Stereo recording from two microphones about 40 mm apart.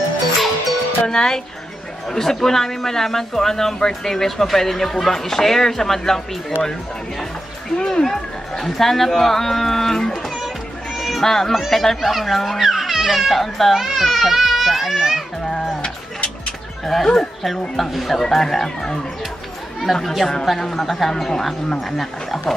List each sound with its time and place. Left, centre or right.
1.0 s speech: centre
7.7 s speech: centre
11.0 s a sound: centre
11.7 s a child's voice: centre
13.7 s children playing: centre
16.8 s a child's voice: centre